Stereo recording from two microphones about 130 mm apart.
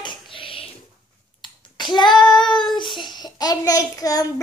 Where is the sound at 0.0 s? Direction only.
40° left (ahead or behind).